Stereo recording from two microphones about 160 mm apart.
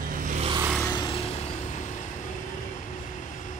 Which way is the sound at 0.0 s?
60° right (ahead or behind).